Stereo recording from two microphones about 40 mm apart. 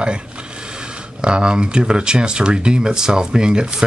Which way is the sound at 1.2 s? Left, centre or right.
Right.